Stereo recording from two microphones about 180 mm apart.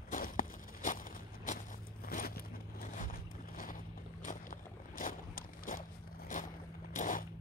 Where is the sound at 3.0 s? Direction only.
50° left (ahead or behind).